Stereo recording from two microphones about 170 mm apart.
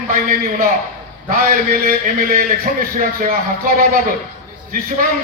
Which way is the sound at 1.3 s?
55° right (ahead or behind).